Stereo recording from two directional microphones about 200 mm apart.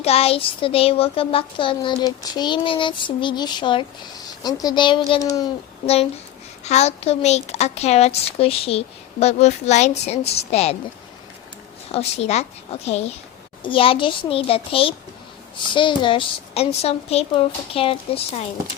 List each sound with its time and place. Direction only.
0.0 s child singing: 30° left (ahead or behind)
5.8 s a woman's voice: 30° left (ahead or behind)
11.9 s a woman's voice: 30° left (ahead or behind)
13.6 s child singing: 25° left (ahead or behind)